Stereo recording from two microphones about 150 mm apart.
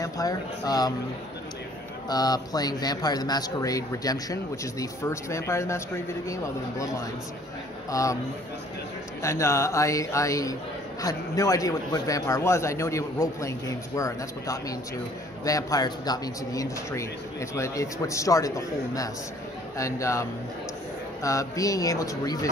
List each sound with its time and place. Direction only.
0.0 s speech: 25° left (ahead or behind)
2.0 s speech: 25° left (ahead or behind)
9.2 s speech: 20° left (ahead or behind)